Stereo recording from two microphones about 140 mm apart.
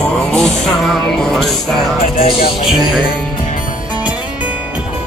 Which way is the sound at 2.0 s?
35° left (ahead or behind).